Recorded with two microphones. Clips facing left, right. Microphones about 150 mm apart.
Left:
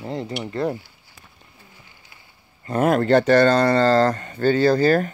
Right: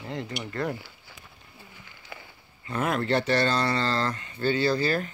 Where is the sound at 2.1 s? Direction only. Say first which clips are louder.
Right 15 dB; 60° right (ahead or behind).